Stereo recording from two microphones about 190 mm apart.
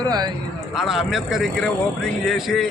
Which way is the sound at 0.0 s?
20° right (ahead or behind).